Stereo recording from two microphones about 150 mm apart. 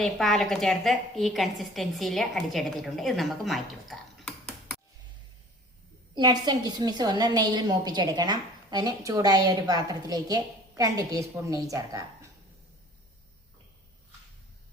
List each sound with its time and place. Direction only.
0.0 s a woman's voice: centre (ahead or behind)
6.1 s a woman's voice: 30° right (ahead or behind)